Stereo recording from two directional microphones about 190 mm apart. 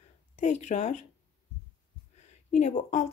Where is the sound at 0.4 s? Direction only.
40° left (ahead or behind).